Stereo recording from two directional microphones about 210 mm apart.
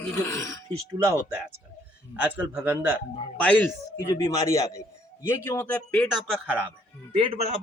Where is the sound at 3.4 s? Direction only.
5° left (ahead or behind).